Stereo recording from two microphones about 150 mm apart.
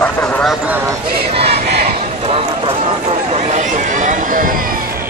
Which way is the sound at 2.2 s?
40° right (ahead or behind).